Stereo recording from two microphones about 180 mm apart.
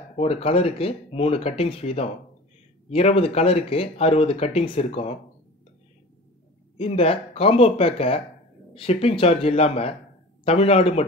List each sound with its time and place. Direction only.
0.2 s speech: 35° left (ahead or behind)
6.8 s speech: 35° left (ahead or behind)